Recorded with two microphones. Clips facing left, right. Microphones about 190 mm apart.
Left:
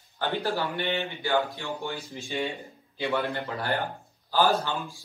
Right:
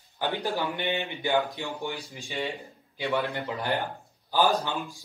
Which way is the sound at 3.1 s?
15° right (ahead or behind).